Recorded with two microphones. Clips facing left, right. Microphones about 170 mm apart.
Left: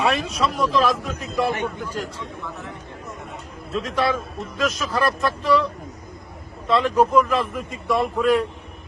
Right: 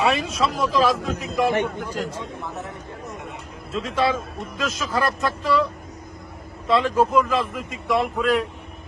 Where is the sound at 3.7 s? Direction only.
Centre (ahead or behind).